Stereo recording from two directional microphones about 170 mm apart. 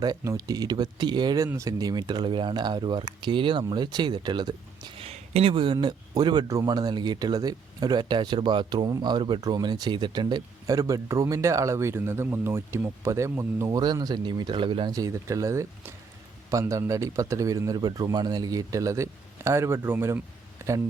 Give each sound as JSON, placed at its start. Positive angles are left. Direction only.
{"t": 0.0, "sound": "speech", "side_deg": -20}